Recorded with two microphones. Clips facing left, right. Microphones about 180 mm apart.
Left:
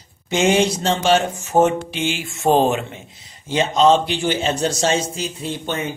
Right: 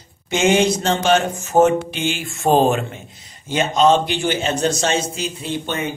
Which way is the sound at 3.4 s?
30° left (ahead or behind).